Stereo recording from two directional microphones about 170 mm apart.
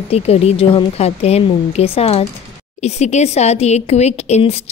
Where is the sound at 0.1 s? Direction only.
35° left (ahead or behind).